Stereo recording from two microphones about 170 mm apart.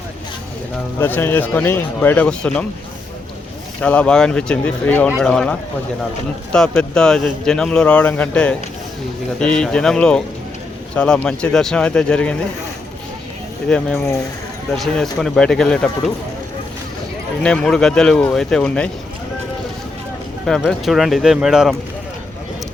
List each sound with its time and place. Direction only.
0.9 s a man's voice: 10° left (ahead or behind)
3.8 s a man's voice: 10° left (ahead or behind)
13.7 s speech: 5° left (ahead or behind)
17.4 s speech: 5° left (ahead or behind)
20.5 s speech: centre (ahead or behind)